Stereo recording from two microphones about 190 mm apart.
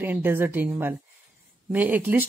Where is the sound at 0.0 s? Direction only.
10° right (ahead or behind).